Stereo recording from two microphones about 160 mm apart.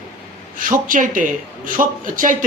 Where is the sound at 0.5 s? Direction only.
60° right (ahead or behind).